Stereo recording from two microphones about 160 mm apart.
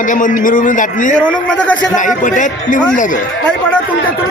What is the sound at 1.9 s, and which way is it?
A man's voice, 55° left (ahead or behind).